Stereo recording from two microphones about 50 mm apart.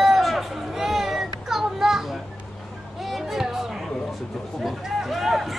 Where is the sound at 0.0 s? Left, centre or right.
Centre.